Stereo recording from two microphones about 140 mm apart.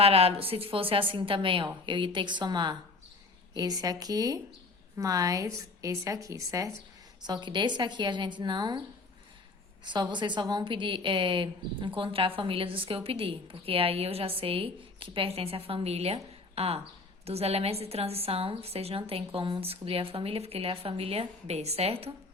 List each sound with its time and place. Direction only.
0.0 s a woman's voice: 45° right (ahead or behind)
9.8 s a woman's voice: 35° right (ahead or behind)